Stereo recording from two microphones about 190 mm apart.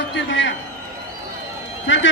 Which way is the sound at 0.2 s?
75° left (ahead or behind).